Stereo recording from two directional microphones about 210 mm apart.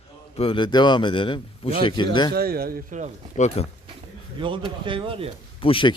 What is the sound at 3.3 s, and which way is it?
Speech, 30° left (ahead or behind).